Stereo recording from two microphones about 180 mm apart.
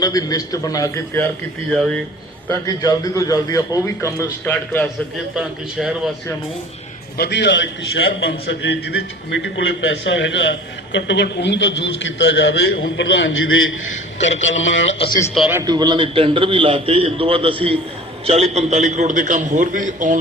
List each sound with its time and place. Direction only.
0.0 s a man's voice: 20° left (ahead or behind)
2.5 s a man's voice: 20° left (ahead or behind)
5.3 s a man's voice: 5° right (ahead or behind)
7.2 s a man's voice: 70° left (ahead or behind); by 14.9 s 90° left
15.4 s a man's voice: 20° right (ahead or behind); by 20.1 s 45° right (ahead or behind)